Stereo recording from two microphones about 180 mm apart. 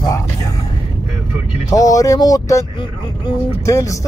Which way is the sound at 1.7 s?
20° left (ahead or behind).